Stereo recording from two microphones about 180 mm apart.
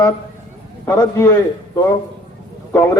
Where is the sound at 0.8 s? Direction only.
20° left (ahead or behind).